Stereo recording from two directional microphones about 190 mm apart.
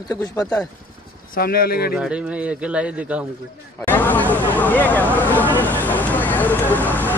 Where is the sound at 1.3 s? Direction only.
50° left (ahead or behind).